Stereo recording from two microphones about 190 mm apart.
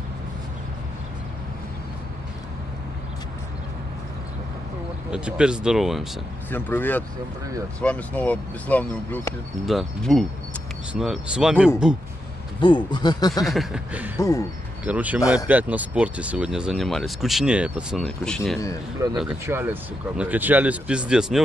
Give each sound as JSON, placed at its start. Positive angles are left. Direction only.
{"t": 5.1, "sound": "speech", "side_deg": -5}
{"t": 6.5, "sound": "speech", "side_deg": 10}
{"t": 12.5, "sound": "speech", "side_deg": 25}
{"t": 13.5, "sound": "speech", "side_deg": 0}
{"t": 19.1, "sound": "speech", "side_deg": -10}